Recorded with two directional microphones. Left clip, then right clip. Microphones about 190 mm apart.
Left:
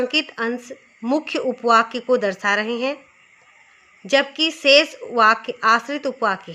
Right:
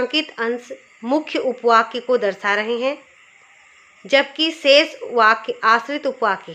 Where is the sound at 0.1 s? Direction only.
20° left (ahead or behind).